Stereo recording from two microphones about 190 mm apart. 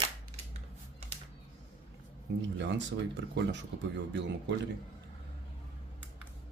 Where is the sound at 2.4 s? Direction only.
65° right (ahead or behind).